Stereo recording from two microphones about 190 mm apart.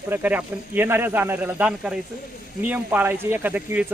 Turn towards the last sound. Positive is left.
turn(degrees=-10)  # may be behind; listen again after turning